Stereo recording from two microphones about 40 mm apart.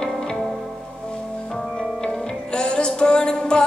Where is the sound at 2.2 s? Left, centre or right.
Centre.